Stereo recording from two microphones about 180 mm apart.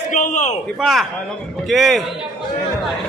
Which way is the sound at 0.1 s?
45° left (ahead or behind).